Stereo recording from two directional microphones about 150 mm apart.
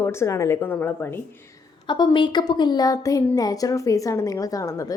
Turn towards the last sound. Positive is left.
turn(degrees=20)  # may be behind; listen again after turning